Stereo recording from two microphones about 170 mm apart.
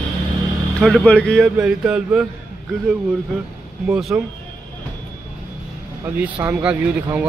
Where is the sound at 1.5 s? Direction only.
5° right (ahead or behind).